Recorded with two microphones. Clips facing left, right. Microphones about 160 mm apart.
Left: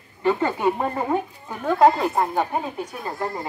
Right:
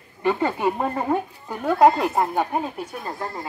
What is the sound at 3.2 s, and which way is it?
Speech, 20° left (ahead or behind).